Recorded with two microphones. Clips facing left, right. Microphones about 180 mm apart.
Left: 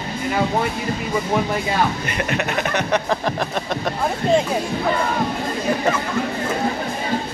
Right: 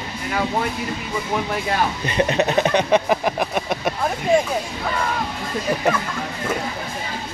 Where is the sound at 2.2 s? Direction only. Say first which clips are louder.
Right 6 dB; 25° right (ahead or behind).